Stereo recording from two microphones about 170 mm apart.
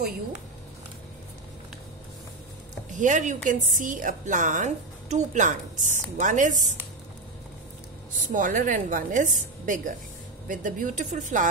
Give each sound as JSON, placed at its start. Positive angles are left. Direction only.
{"t": 2.9, "sound": "a woman's voice", "side_deg": -45}
{"t": 8.3, "sound": "a woman's voice", "side_deg": -50}